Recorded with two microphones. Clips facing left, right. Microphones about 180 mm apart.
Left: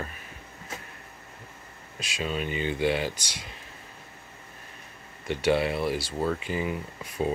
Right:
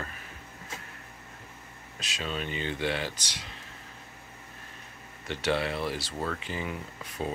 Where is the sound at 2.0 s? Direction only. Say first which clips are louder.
Left 4 dB; 10° left (ahead or behind).